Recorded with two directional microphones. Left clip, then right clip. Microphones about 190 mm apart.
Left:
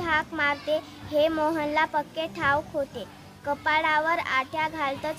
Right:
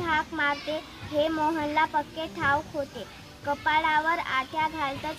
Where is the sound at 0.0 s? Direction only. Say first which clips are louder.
Left 1 dB; 20° left (ahead or behind).